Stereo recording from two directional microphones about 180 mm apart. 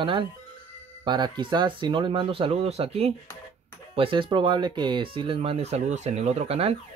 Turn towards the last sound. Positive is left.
turn(degrees=-35)  # may be behind; listen again after turning